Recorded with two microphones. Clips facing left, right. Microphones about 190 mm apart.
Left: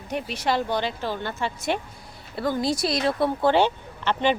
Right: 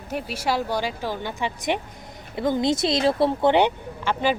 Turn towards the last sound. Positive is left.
turn(degrees=-15)  # may be behind; listen again after turning